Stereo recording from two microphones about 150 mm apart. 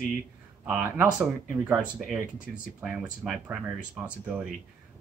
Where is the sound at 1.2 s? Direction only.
Centre (ahead or behind).